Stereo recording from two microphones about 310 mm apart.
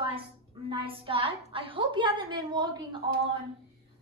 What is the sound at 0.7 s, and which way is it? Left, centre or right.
A woman's voice, centre.